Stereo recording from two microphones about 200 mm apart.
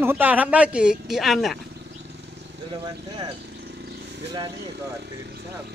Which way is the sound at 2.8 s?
20° right (ahead or behind).